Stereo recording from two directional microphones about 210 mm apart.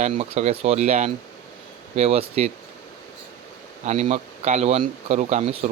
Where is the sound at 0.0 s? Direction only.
30° right (ahead or behind).